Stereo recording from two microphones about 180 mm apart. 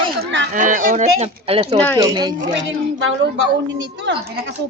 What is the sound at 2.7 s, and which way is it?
Speech, 90° right.